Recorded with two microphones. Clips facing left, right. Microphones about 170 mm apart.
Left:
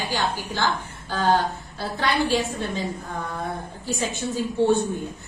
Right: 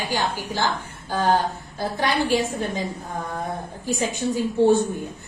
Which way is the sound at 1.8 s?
15° right (ahead or behind).